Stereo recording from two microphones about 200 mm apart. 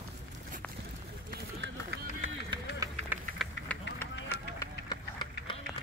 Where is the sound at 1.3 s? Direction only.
60° right (ahead or behind).